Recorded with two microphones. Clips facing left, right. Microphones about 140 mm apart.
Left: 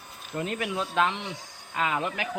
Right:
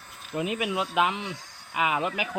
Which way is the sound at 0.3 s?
15° right (ahead or behind).